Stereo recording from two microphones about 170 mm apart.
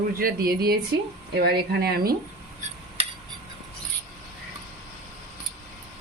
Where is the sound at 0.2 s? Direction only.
60° right (ahead or behind).